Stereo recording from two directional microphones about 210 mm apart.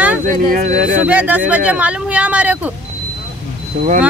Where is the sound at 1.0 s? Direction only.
5° right (ahead or behind).